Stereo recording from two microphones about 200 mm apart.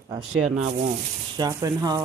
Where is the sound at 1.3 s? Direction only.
20° right (ahead or behind).